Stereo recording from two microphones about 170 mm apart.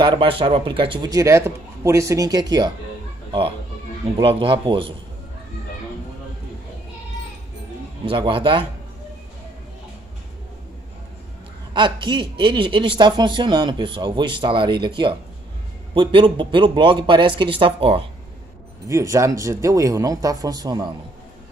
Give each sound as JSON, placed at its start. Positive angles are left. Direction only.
{"t": 0.0, "sound": "a man's voice", "side_deg": -30}
{"t": 8.0, "sound": "a man's voice", "side_deg": -30}
{"t": 11.7, "sound": "a man's voice", "side_deg": -25}
{"t": 18.9, "sound": "a man's voice", "side_deg": -20}